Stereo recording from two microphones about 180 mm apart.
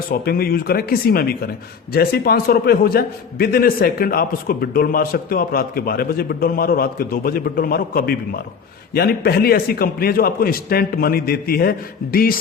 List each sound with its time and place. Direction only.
0.1 s a man's voice: 55° left (ahead or behind)